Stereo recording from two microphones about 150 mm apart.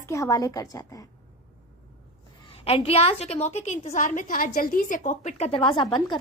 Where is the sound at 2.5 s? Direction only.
40° left (ahead or behind).